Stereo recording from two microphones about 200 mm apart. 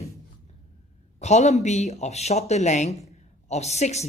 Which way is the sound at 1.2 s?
35° left (ahead or behind).